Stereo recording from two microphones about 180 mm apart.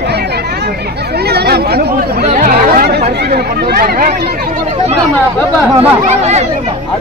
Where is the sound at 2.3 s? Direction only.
50° right (ahead or behind).